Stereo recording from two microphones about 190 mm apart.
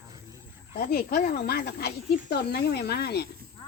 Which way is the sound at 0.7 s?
50° left (ahead or behind).